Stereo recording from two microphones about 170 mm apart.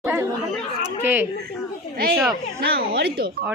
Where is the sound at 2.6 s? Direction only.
70° right (ahead or behind).